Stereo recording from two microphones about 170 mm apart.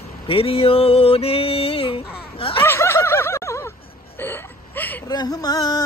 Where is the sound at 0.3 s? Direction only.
35° left (ahead or behind).